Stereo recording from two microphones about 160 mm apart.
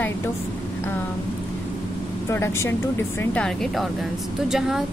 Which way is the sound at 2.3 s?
15° left (ahead or behind).